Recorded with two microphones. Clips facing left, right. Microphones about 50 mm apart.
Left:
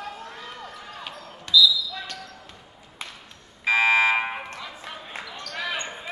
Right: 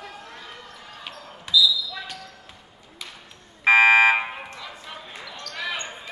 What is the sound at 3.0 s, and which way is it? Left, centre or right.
Ping, left.